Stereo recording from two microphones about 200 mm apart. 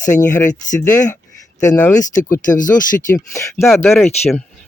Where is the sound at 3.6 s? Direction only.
Centre (ahead or behind).